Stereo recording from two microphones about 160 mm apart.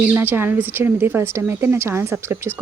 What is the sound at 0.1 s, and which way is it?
A woman's voice, 10° right (ahead or behind).